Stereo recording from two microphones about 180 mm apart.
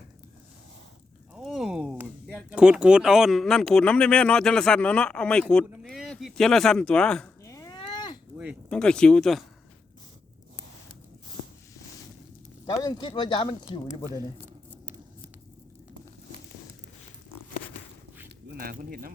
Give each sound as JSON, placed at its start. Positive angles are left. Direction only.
{"t": 1.3, "sound": "speech", "side_deg": -5}
{"t": 7.4, "sound": "a sound", "side_deg": 20}
{"t": 8.7, "sound": "speech", "side_deg": 5}
{"t": 12.6, "sound": "speech", "side_deg": 25}
{"t": 14.1, "sound": "speech", "side_deg": -20}
{"t": 18.5, "sound": "speech", "side_deg": -55}